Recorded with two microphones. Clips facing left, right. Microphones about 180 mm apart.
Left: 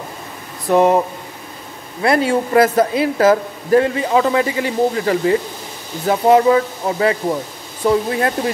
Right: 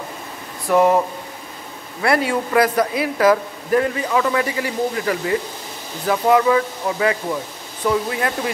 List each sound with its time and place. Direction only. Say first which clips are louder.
0.7 s a man's voice: left 2 dB; 20° left (ahead or behind)